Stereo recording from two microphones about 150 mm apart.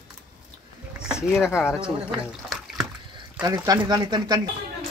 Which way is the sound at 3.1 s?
25° right (ahead or behind).